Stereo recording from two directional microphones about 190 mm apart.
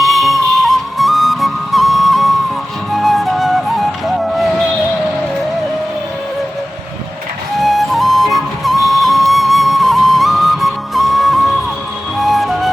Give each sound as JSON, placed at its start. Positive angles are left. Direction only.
{"t": 0.0, "sound": "flute", "side_deg": 0}
{"t": 7.6, "sound": "music", "side_deg": 0}